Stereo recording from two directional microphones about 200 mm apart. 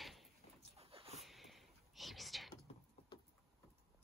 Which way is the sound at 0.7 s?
30° right (ahead or behind).